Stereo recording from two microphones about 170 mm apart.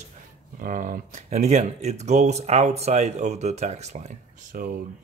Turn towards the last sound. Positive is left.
turn(degrees=-55)  # may be behind; listen again after turning